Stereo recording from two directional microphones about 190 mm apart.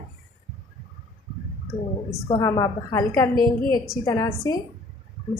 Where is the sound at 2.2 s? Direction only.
25° left (ahead or behind).